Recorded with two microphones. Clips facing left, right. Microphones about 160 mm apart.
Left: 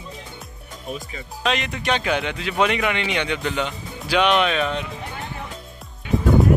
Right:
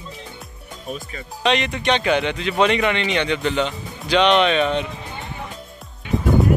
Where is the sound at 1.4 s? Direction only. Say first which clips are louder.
Right 4 dB; centre (ahead or behind).